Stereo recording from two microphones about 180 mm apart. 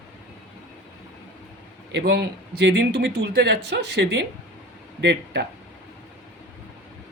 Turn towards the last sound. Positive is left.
turn(degrees=-65)  # may be behind; listen again after turning